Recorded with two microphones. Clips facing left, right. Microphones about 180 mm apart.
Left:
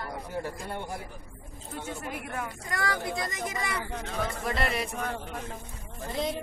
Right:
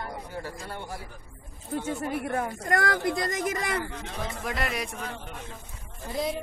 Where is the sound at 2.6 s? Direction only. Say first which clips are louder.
Right 6 dB; 50° right (ahead or behind).